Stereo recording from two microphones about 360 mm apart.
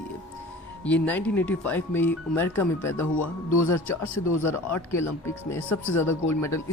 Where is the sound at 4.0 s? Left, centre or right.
Left.